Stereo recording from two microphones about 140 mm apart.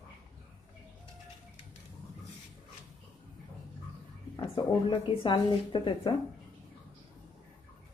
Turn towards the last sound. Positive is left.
turn(degrees=35)  # may be behind; listen again after turning